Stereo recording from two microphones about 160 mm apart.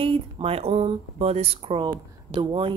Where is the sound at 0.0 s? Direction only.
35° right (ahead or behind).